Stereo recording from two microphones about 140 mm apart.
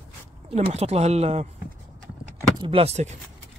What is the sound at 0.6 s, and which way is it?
Speech, 50° right (ahead or behind).